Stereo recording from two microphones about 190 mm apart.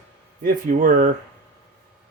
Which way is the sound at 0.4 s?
45° right (ahead or behind).